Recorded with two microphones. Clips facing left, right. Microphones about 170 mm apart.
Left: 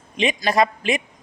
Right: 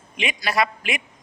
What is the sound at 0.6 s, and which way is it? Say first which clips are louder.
Speech: left 5 dB; 40° left (ahead or behind).